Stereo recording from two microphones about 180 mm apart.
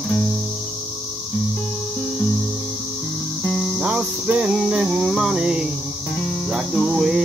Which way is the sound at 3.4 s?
5° left (ahead or behind).